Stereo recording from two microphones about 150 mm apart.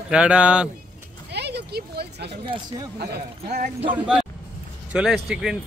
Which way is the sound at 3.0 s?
90° right.